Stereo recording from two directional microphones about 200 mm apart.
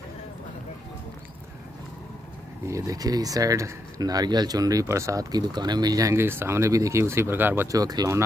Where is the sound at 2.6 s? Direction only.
15° right (ahead or behind).